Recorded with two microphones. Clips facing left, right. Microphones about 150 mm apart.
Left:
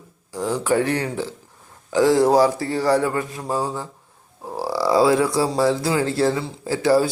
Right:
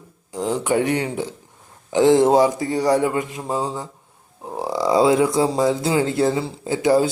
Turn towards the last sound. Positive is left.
turn(degrees=-20)  # may be behind; listen again after turning